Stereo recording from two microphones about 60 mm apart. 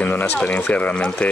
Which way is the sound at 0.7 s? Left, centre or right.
Left.